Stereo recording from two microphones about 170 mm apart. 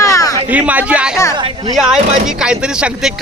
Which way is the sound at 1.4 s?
30° right (ahead or behind).